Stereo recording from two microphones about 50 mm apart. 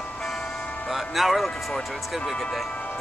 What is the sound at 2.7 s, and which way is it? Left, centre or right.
Music, left.